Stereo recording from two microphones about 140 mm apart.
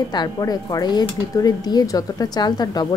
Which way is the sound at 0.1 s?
30° left (ahead or behind).